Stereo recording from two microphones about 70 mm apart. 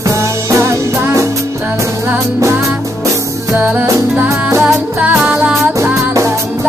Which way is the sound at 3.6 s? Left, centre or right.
Right.